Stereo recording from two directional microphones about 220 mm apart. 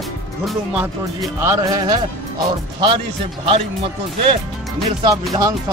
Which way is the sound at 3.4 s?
25° right (ahead or behind).